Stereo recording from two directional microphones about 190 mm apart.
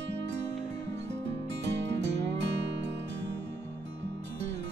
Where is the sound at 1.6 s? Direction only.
65° right (ahead or behind).